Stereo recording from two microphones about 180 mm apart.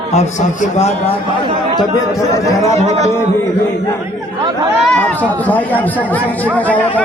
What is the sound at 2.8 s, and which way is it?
Speech, 35° right (ahead or behind).